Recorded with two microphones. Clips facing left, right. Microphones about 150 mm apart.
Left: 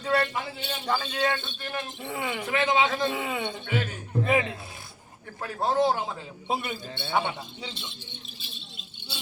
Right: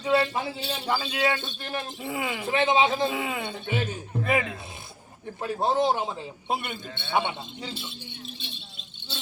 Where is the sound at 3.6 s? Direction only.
20° right (ahead or behind).